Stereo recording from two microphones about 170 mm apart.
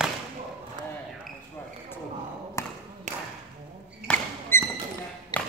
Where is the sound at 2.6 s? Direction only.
15° left (ahead or behind).